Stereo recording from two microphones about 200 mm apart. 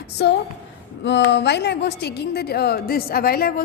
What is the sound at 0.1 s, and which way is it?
A woman's voice, 55° left (ahead or behind).